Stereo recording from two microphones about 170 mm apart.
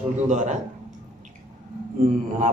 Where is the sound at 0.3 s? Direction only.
45° right (ahead or behind).